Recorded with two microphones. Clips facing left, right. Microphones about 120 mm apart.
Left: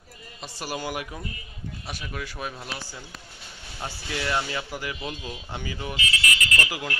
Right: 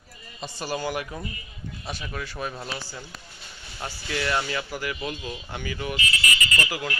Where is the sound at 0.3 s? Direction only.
5° left (ahead or behind); by 6.0 s 25° left (ahead or behind).